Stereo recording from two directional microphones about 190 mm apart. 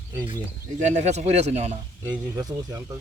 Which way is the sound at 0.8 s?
40° right (ahead or behind).